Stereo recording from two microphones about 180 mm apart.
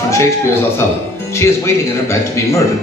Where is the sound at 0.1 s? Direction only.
15° left (ahead or behind).